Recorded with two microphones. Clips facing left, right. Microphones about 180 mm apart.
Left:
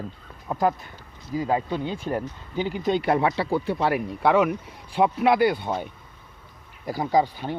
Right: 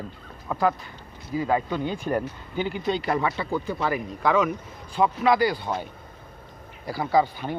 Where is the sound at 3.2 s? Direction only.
80° left.